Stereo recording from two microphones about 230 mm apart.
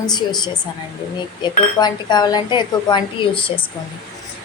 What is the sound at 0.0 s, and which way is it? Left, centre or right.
Speech, centre.